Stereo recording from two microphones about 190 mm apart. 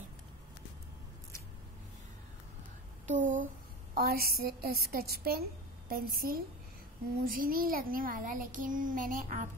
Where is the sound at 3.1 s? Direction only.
40° right (ahead or behind).